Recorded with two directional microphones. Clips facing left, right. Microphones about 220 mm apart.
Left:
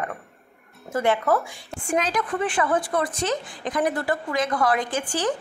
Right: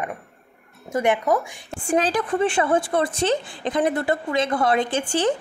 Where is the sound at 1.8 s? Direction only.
30° right (ahead or behind).